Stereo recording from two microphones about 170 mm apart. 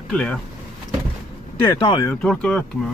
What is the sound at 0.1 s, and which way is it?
Speech, 5° left (ahead or behind).